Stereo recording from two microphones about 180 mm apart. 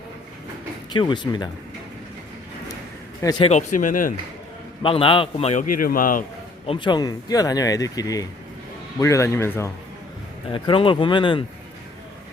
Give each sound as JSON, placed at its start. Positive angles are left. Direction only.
{"t": 0.9, "sound": "speech", "side_deg": 25}
{"t": 3.2, "sound": "a man's voice", "side_deg": 20}
{"t": 3.4, "sound": "speech", "side_deg": 40}
{"t": 4.8, "sound": "a man's voice", "side_deg": 30}
{"t": 5.8, "sound": "speech", "side_deg": 50}
{"t": 6.7, "sound": "a man's voice", "side_deg": 25}
{"t": 10.5, "sound": "speech", "side_deg": 30}